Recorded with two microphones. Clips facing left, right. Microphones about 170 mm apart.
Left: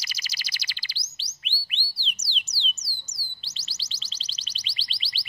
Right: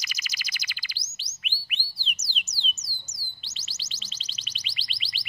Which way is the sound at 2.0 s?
30° left (ahead or behind).